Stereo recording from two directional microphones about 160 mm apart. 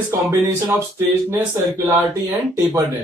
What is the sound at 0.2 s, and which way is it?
Speech, 20° right (ahead or behind).